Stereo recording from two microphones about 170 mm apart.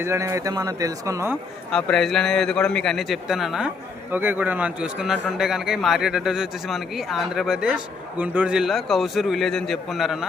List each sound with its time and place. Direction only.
0.0 s speech: 15° right (ahead or behind)
1.7 s a man's voice: 5° left (ahead or behind)